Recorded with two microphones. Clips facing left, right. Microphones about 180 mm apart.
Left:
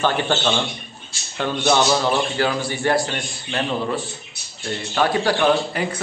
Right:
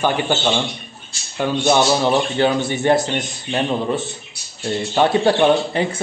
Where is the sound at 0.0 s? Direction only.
15° right (ahead or behind).